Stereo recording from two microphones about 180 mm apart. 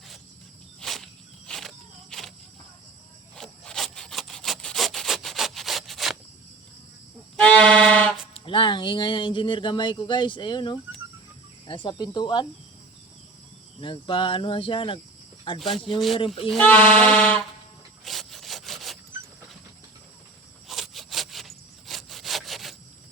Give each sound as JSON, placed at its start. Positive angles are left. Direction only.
{"t": 0.8, "sound": "insect", "side_deg": 0}
{"t": 3.3, "sound": "sawing", "side_deg": 5}
{"t": 7.3, "sound": "music", "side_deg": 5}
{"t": 8.3, "sound": "speech", "side_deg": 30}
{"t": 13.8, "sound": "speech", "side_deg": 30}
{"t": 15.9, "sound": "speech", "side_deg": 0}
{"t": 16.1, "sound": "speech", "side_deg": 30}
{"t": 16.5, "sound": "speech", "side_deg": 10}
{"t": 18.0, "sound": "sawing", "side_deg": 0}
{"t": 20.7, "sound": "sawing", "side_deg": 0}